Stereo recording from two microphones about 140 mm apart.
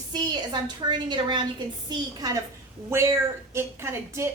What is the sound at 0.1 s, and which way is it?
A woman's voice, 30° right (ahead or behind).